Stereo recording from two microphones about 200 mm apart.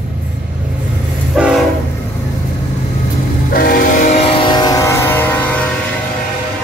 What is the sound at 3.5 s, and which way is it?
Train, 45° left (ahead or behind).